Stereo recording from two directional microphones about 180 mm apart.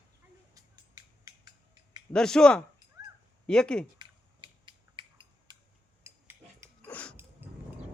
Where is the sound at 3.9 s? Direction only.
25° right (ahead or behind).